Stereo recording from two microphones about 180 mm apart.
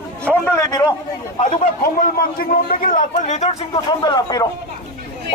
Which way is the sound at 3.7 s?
25° left (ahead or behind).